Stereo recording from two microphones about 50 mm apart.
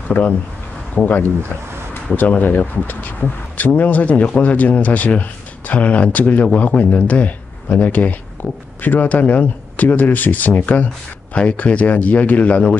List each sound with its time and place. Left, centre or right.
0.2 s speech: left